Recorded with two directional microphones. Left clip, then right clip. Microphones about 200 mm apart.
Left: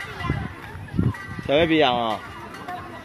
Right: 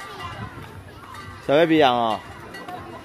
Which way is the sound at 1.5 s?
25° right (ahead or behind).